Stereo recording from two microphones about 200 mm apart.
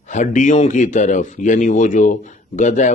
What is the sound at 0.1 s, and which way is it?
Speech, 40° left (ahead or behind).